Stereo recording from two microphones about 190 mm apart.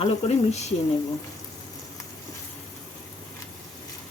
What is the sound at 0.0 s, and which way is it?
Speech, 35° left (ahead or behind).